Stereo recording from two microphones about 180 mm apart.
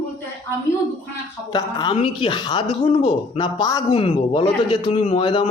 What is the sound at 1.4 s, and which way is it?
A man's voice, 25° left (ahead or behind).